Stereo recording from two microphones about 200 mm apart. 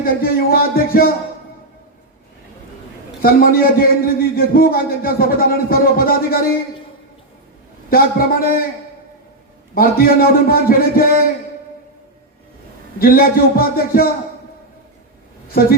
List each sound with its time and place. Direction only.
0.0 s a man's voice: 45° left (ahead or behind)
3.2 s a man's voice: 45° left (ahead or behind)
7.9 s a man's voice: 45° left (ahead or behind)
9.7 s a man's voice: 45° left (ahead or behind)
13.0 s a man's voice: 45° left (ahead or behind)